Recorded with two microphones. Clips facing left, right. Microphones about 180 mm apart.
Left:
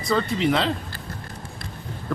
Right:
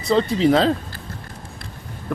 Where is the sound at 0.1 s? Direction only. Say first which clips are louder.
Right 5 dB; 30° right (ahead or behind).